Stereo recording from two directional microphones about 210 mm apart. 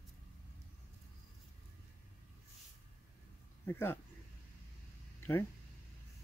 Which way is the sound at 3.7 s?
10° left (ahead or behind).